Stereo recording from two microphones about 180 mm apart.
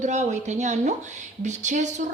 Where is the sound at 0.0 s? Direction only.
40° right (ahead or behind).